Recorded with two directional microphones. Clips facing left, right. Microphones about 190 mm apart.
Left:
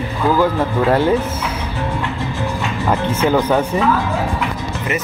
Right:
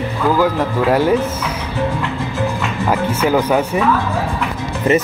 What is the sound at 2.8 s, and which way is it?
Speech, 10° right (ahead or behind).